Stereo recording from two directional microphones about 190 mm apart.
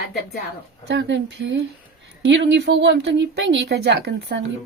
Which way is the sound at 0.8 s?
65° right (ahead or behind).